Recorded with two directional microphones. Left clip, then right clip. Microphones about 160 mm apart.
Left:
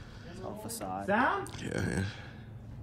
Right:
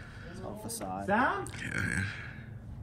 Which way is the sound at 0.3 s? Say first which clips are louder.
Left 1 dB; 15° left (ahead or behind).